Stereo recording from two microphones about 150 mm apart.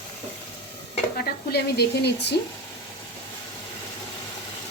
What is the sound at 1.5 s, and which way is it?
Speech, 90° left.